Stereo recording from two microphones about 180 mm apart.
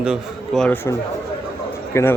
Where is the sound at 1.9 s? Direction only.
15° left (ahead or behind).